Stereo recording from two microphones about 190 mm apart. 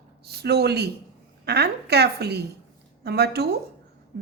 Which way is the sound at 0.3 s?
60° right (ahead or behind).